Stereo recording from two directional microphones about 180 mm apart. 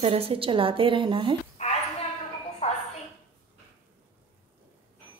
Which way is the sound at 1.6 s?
40° left (ahead or behind).